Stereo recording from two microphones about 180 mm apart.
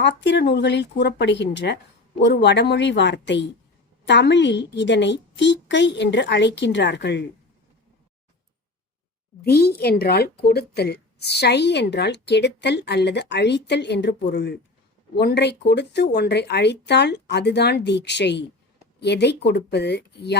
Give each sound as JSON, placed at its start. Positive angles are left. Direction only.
{"t": 0.0, "sound": "speech", "side_deg": 75}
{"t": 9.4, "sound": "speech", "side_deg": 60}